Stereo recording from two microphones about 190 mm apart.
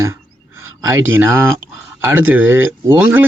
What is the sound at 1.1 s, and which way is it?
Speech, 10° right (ahead or behind).